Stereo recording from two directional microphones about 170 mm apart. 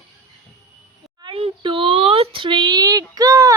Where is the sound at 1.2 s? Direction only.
30° right (ahead or behind).